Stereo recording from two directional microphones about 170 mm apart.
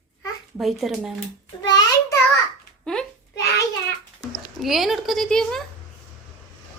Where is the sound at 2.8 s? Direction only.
5° left (ahead or behind).